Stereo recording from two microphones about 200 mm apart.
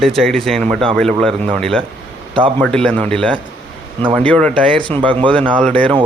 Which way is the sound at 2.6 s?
5° left (ahead or behind).